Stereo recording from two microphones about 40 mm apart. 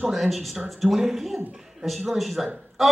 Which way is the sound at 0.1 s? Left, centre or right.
Centre.